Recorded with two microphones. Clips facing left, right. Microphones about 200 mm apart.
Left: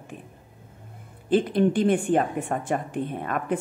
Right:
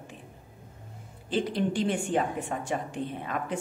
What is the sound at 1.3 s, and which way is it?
A woman's voice, 55° left (ahead or behind).